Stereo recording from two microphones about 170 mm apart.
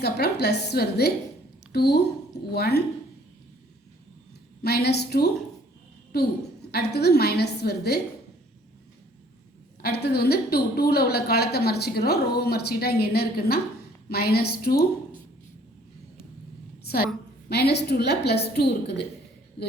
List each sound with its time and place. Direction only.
0.0 s a woman's voice: 70° left (ahead or behind)
4.6 s a woman's voice: 70° left (ahead or behind)
9.8 s a woman's voice: 70° left (ahead or behind)
17.5 s a woman's voice: 80° left